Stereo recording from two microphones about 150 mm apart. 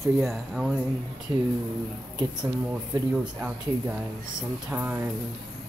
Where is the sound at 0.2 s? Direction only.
Centre (ahead or behind).